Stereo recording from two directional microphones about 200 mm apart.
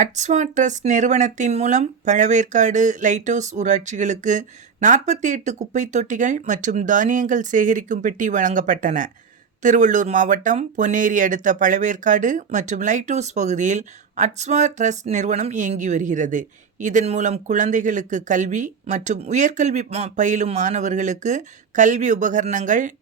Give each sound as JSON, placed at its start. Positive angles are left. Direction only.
{"t": 0.0, "sound": "speech", "side_deg": -35}